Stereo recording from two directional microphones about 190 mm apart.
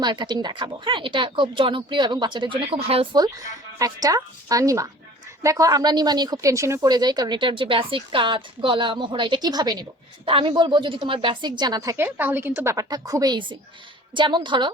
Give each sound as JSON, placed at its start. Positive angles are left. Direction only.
{"t": 0.0, "sound": "speech", "side_deg": -25}